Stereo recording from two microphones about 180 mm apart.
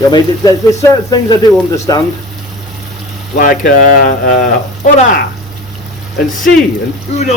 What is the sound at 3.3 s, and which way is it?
Speech, 50° left (ahead or behind).